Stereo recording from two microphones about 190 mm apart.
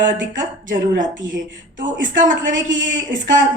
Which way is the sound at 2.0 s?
45° right (ahead or behind).